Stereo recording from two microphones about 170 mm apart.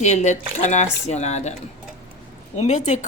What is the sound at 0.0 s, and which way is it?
Speech, 45° left (ahead or behind).